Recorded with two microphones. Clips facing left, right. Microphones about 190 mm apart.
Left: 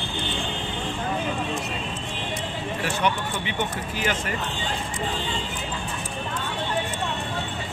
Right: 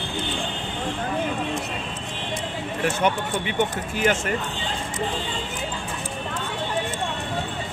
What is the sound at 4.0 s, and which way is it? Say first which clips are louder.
Speech: right 6 dB; 50° right (ahead or behind).